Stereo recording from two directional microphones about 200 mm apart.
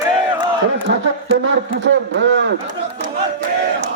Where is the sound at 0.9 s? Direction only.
55° right (ahead or behind).